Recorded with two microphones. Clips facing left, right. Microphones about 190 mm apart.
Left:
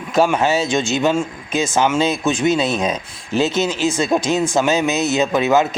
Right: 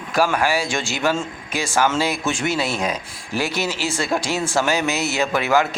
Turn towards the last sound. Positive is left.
turn(degrees=20)  # may be behind; listen again after turning